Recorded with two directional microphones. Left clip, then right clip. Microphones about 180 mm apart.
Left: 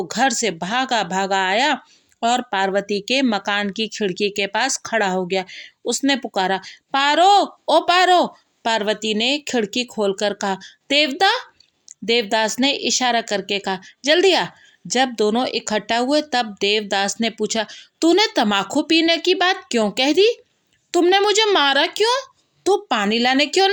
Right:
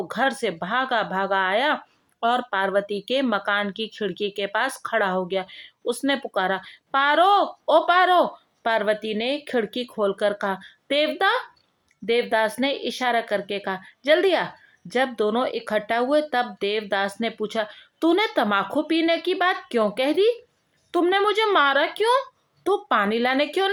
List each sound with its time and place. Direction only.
0.1 s speech: 35° left (ahead or behind)